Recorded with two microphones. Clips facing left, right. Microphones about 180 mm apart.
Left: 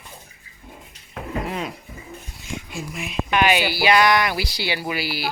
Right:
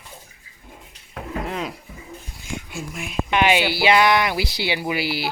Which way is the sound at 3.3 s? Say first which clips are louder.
Right 1 dB; 20° right (ahead or behind).